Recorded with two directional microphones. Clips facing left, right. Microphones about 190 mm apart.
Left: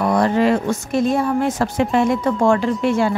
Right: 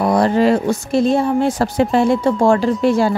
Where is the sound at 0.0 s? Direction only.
35° right (ahead or behind).